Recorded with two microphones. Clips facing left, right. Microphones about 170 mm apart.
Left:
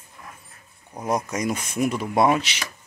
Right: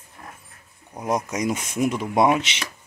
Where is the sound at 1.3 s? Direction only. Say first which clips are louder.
Right 1 dB; 20° right (ahead or behind).